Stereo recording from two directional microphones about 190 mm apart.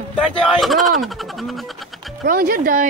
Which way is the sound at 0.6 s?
Centre (ahead or behind).